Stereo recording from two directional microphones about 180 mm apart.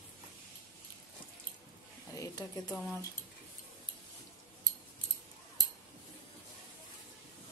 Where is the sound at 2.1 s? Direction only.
20° left (ahead or behind).